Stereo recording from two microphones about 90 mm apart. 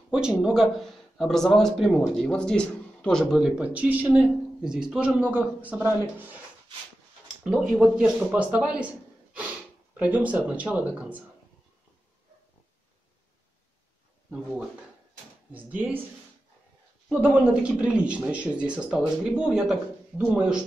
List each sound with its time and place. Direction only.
0.1 s speech: 10° right (ahead or behind)
3.5 s a man's voice: 15° right (ahead or behind)
7.8 s a man's voice: 5° right (ahead or behind)
15.5 s speech: 20° right (ahead or behind)
17.1 s a man's voice: 15° right (ahead or behind)